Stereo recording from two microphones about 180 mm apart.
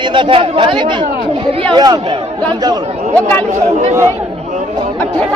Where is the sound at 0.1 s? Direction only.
30° right (ahead or behind).